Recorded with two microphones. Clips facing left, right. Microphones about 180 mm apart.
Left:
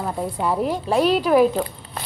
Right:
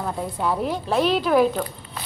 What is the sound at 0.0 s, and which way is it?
A woman's voice, 10° left (ahead or behind).